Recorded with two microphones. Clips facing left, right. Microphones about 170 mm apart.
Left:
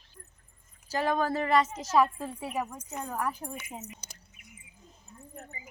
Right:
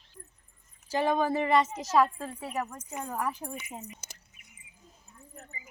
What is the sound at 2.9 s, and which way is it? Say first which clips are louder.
Speech: right 1 dB; 10° right (ahead or behind).